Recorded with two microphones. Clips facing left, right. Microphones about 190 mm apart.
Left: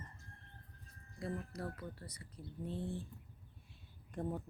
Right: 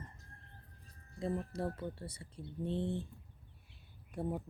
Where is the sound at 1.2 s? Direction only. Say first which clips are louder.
Right 5 dB; 25° right (ahead or behind).